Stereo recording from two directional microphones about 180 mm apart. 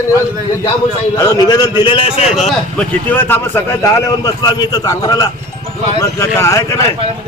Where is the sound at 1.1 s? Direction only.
20° left (ahead or behind).